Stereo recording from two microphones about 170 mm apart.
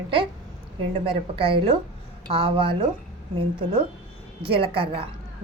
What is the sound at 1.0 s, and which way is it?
A woman's voice, 30° right (ahead or behind).